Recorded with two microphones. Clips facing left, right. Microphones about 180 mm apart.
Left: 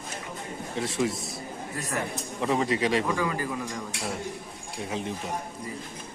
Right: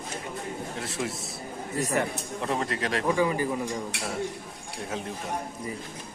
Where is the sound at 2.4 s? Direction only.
Centre (ahead or behind).